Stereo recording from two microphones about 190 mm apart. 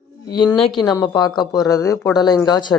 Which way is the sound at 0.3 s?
20° left (ahead or behind).